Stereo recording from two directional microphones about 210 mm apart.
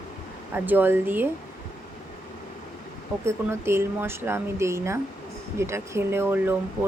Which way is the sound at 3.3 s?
10° right (ahead or behind).